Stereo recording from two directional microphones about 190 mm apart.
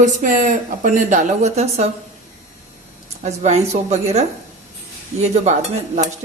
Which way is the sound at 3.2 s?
35° right (ahead or behind).